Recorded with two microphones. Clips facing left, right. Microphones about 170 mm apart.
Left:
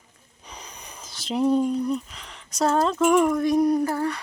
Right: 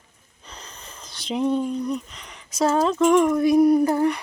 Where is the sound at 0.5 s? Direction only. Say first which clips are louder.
Even; 10° left (ahead or behind); by 3.8 s 10° right (ahead or behind).